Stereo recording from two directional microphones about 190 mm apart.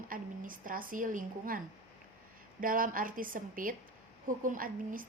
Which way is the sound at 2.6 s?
45° right (ahead or behind).